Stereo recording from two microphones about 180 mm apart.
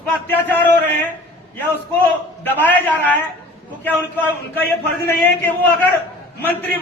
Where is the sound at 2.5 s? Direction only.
10° left (ahead or behind).